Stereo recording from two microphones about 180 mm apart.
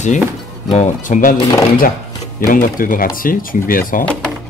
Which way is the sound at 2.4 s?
50° left (ahead or behind).